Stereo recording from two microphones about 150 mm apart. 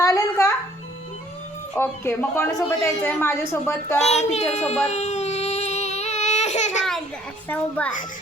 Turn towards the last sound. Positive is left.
turn(degrees=10)  # may be behind; listen again after turning